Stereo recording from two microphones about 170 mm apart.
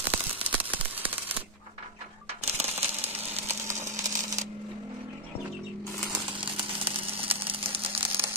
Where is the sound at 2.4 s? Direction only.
40° right (ahead or behind).